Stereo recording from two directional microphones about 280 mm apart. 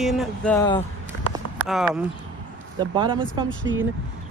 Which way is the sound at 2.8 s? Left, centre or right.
Centre.